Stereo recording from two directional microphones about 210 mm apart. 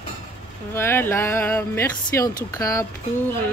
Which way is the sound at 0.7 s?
10° left (ahead or behind).